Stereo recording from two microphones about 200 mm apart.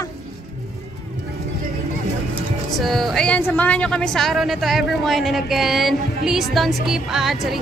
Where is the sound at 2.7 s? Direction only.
Centre (ahead or behind).